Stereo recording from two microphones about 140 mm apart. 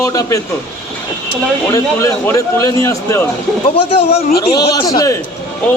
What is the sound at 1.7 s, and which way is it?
A man's voice, 20° left (ahead or behind).